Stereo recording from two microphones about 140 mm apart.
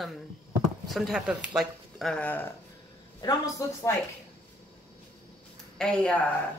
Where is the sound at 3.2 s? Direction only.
25° left (ahead or behind).